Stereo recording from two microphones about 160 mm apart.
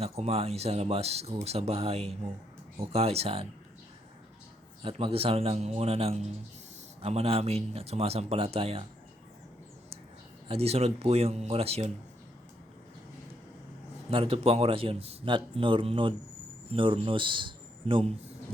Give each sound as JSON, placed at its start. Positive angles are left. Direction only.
{"t": 0.0, "sound": "speech", "side_deg": -40}
{"t": 4.8, "sound": "speech", "side_deg": -35}
{"t": 10.5, "sound": "speech", "side_deg": -40}
{"t": 14.1, "sound": "a man's voice", "side_deg": -35}